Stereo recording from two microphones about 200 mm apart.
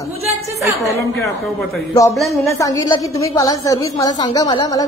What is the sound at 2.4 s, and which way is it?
A woman's voice, 15° left (ahead or behind).